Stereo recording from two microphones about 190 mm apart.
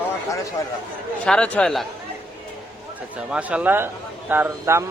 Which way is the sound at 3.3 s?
5° right (ahead or behind).